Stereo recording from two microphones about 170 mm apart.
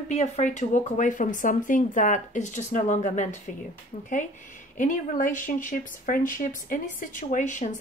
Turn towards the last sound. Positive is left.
turn(degrees=45)  # may be behind; listen again after turning